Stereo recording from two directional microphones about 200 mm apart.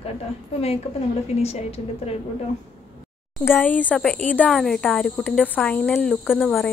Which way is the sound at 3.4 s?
10° left (ahead or behind).